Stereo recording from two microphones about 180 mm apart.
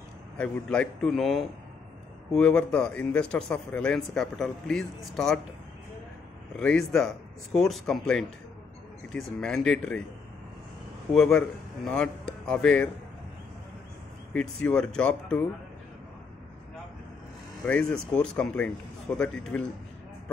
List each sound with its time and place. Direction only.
0.4 s speech: 5° left (ahead or behind)
6.6 s speech: 5° left (ahead or behind)
11.1 s speech: centre (ahead or behind)
14.3 s speech: 5° left (ahead or behind)
17.6 s speech: 5° left (ahead or behind)